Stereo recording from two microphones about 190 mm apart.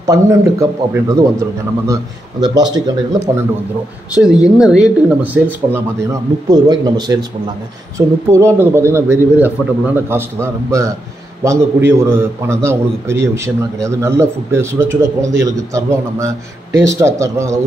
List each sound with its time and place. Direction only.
0.0 s speech: 15° right (ahead or behind)
2.4 s speech: 20° right (ahead or behind)
4.1 s speech: 5° right (ahead or behind); by 7.2 s 20° right (ahead or behind)
8.3 s speech: 15° right (ahead or behind)